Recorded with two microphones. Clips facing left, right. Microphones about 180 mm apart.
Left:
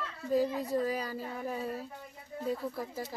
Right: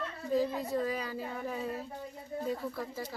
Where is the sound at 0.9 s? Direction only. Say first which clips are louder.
Left 1 dB; 40° left (ahead or behind).